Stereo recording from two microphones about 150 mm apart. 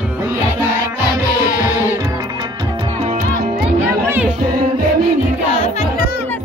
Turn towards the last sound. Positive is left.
turn(degrees=40)  # may be behind; listen again after turning